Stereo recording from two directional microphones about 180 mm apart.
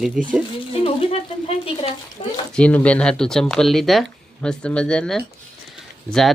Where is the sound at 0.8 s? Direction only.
30° left (ahead or behind).